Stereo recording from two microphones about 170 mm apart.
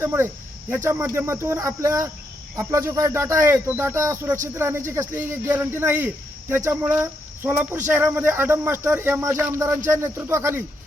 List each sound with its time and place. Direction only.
0.0 s speech: 15° right (ahead or behind)